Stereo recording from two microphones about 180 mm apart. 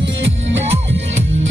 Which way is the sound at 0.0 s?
90° right.